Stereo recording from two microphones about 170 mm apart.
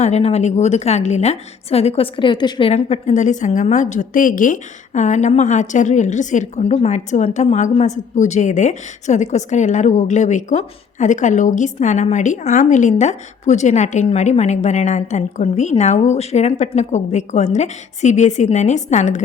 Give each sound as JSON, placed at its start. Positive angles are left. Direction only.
{"t": 0.0, "sound": "a woman's voice", "side_deg": 40}